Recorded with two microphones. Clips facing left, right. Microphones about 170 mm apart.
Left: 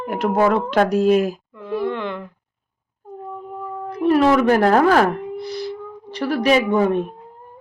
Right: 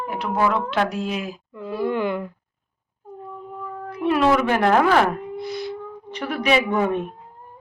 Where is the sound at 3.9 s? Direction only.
40° left (ahead or behind).